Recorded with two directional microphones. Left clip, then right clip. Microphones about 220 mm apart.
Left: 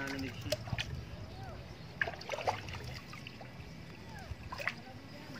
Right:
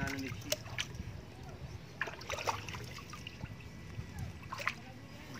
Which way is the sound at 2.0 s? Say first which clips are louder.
Left 3 dB; 25° right (ahead or behind).